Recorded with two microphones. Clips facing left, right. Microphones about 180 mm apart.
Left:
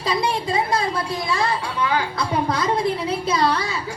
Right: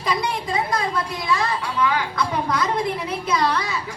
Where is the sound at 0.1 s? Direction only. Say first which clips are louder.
Left 2 dB; 30° left (ahead or behind).